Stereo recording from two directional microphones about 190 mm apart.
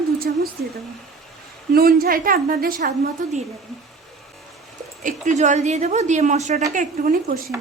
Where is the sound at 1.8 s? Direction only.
50° right (ahead or behind).